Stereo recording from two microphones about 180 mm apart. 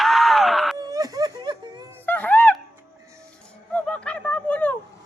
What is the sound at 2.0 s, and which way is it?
Music, 10° left (ahead or behind).